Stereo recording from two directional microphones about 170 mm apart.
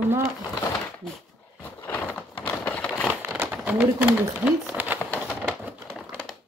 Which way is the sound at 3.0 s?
10° right (ahead or behind).